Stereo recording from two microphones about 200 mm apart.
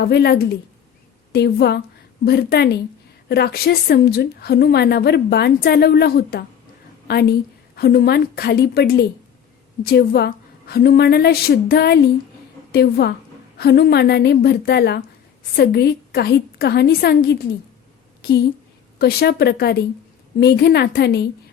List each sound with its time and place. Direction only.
0.0 s a woman's voice: 55° left (ahead or behind)
18.9 s a woman's voice: 50° left (ahead or behind)